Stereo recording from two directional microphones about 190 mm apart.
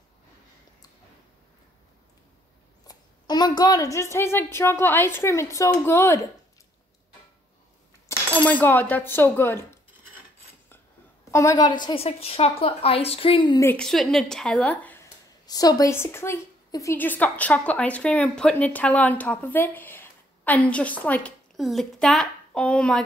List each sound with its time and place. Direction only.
2.9 s a woman's voice: 20° left (ahead or behind)
8.4 s a woman's voice: 10° left (ahead or behind)
11.3 s a woman's voice: 20° left (ahead or behind)
13.7 s a woman's voice: centre (ahead or behind)
15.4 s a woman's voice: 20° left (ahead or behind)